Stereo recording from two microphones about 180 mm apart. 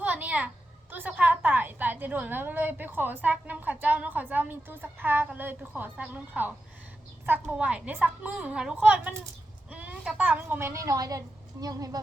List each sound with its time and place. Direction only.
0.0 s a woman's voice: 10° right (ahead or behind)